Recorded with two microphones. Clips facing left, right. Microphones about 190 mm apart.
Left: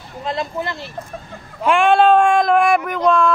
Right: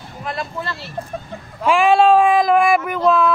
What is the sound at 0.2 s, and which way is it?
Speech, 25° left (ahead or behind).